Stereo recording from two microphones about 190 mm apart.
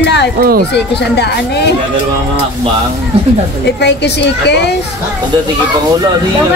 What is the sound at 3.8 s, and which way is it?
Speech, 65° left (ahead or behind).